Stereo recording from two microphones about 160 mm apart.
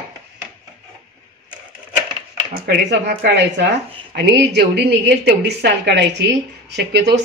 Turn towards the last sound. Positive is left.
turn(degrees=-90)